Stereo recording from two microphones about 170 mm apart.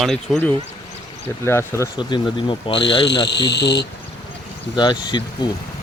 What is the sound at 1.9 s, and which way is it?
Speech, 30° left (ahead or behind).